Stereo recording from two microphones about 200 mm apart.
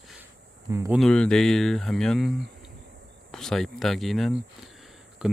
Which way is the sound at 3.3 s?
Centre (ahead or behind).